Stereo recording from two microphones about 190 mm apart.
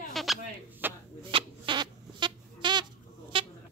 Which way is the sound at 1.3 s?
25° right (ahead or behind).